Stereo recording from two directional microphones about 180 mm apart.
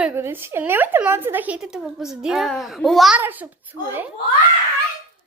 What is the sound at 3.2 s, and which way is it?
Speech, 10° right (ahead or behind).